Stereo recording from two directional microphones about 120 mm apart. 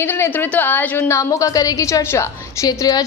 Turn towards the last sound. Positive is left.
turn(degrees=30)  # may be behind; listen again after turning